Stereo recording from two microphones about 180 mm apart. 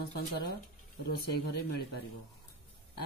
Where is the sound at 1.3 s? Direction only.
65° left (ahead or behind).